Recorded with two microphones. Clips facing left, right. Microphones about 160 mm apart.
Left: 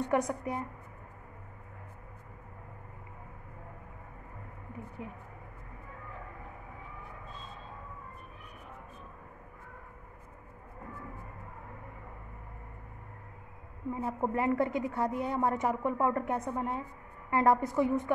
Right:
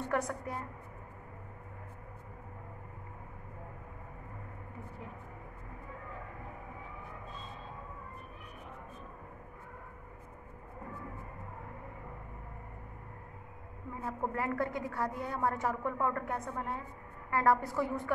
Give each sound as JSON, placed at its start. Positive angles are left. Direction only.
{"t": 0.0, "sound": "a woman's voice", "side_deg": 20}
{"t": 14.0, "sound": "a woman's voice", "side_deg": 20}